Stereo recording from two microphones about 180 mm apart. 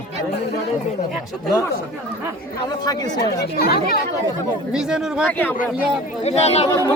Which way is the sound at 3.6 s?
60° left (ahead or behind).